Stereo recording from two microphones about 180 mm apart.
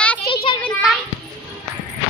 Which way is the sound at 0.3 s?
30° left (ahead or behind).